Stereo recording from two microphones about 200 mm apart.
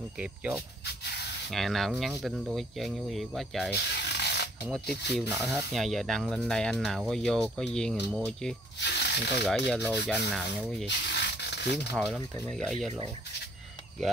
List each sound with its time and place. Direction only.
0.2 s speech: 5° right (ahead or behind)
3.7 s ratchet: 55° left (ahead or behind)
4.8 s speech: 55° left (ahead or behind)
5.3 s speech: 15° right (ahead or behind)
5.7 s speech: centre (ahead or behind)
8.7 s snake: 55° left (ahead or behind)
9.8 s speech: 10° right (ahead or behind)
10.3 s speech: centre (ahead or behind)
10.9 s rub: 55° left (ahead or behind)
12.4 s speech: 5° left (ahead or behind)